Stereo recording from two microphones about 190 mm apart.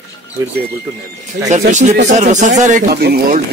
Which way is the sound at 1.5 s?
40° right (ahead or behind).